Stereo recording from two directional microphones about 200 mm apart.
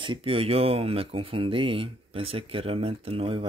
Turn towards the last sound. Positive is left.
turn(degrees=-30)  # may be behind; listen again after turning